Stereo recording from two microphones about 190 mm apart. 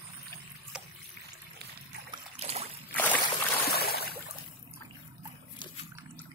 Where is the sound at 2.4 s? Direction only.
35° right (ahead or behind).